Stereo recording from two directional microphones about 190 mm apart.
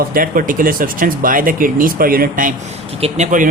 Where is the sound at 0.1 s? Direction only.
45° right (ahead or behind).